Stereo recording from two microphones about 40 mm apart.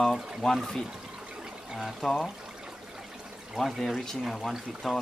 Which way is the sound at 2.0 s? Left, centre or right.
Centre.